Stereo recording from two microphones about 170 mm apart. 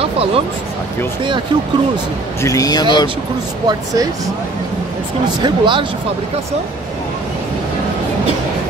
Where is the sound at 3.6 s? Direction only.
20° right (ahead or behind).